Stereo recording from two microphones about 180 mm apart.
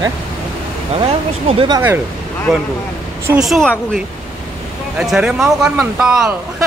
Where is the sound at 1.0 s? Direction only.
30° right (ahead or behind).